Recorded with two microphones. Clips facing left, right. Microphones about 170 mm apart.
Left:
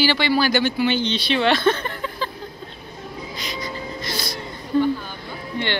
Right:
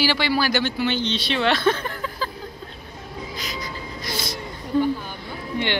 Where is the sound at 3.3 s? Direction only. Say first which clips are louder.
Left 2 dB; 5° right (ahead or behind).